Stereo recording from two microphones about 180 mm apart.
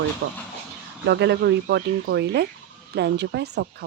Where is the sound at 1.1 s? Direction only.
70° right (ahead or behind).